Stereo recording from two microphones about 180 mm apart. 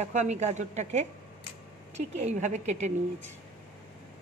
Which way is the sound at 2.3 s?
40° right (ahead or behind).